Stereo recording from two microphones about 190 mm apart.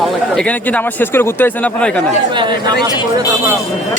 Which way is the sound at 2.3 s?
25° right (ahead or behind).